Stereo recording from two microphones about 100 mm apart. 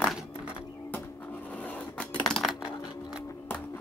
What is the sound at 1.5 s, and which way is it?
Scissors, 15° left (ahead or behind).